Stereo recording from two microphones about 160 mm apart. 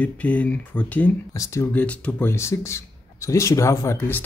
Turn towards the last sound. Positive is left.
turn(degrees=15)  # may be behind; listen again after turning